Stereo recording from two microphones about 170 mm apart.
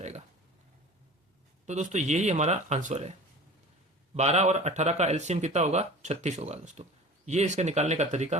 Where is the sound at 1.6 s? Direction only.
45° right (ahead or behind).